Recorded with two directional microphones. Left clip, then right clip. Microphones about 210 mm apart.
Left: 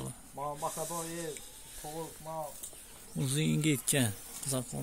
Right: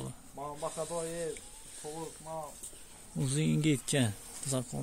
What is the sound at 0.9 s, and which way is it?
Speech, 45° left (ahead or behind).